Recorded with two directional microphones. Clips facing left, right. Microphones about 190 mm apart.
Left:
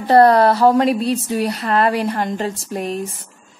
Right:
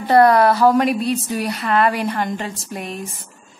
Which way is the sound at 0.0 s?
30° left (ahead or behind).